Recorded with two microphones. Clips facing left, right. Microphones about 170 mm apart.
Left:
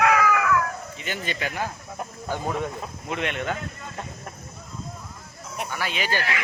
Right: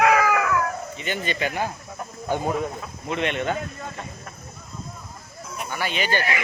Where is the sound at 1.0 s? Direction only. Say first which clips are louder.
Right 4 dB; centre (ahead or behind).